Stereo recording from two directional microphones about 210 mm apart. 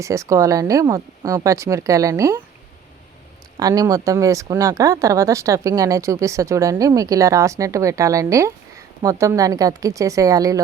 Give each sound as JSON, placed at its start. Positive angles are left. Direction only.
{"t": 0.0, "sound": "speech", "side_deg": -15}
{"t": 3.6, "sound": "speech", "side_deg": -15}